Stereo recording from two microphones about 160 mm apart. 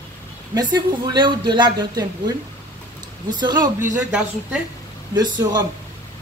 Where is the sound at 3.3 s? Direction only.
25° right (ahead or behind).